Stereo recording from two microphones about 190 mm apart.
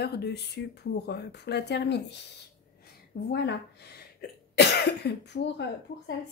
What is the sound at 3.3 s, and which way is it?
Speech, 60° left (ahead or behind).